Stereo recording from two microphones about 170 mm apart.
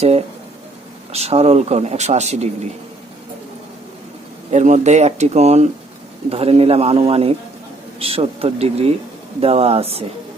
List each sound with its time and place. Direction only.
1.1 s speech: 40° right (ahead or behind)
4.5 s speech: 45° right (ahead or behind)